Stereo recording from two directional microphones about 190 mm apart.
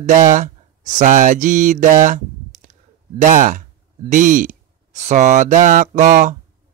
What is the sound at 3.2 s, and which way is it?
Speech, 45° right (ahead or behind).